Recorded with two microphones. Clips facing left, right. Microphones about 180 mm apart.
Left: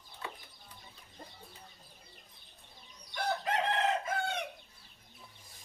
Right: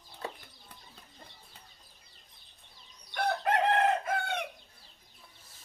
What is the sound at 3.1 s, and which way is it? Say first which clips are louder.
Chicken: right 4 dB; 60° right (ahead or behind).